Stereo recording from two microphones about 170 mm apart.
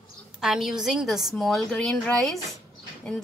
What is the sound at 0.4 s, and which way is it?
A woman's voice, centre (ahead or behind).